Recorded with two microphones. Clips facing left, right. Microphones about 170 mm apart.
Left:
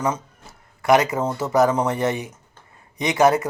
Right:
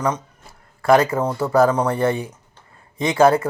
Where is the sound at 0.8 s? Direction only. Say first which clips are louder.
Right 2 dB; 20° left (ahead or behind).